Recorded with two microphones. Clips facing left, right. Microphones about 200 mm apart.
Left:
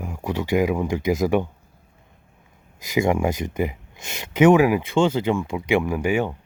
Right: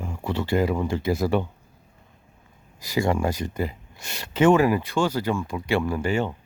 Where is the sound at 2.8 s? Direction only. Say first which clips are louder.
Left 3 dB; 20° left (ahead or behind).